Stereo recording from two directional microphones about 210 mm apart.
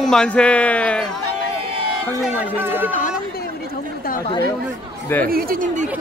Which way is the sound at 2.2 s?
5° right (ahead or behind).